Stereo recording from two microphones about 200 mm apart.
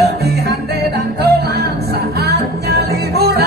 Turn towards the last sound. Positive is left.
turn(degrees=-55)  # may be behind; listen again after turning